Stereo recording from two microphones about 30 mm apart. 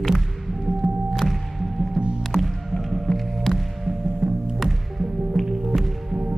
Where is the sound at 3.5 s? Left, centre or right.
Right.